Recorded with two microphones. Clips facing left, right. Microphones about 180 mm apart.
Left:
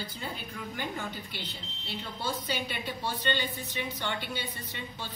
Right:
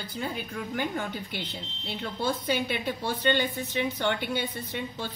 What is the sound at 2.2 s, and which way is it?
A woman's voice, 50° right (ahead or behind).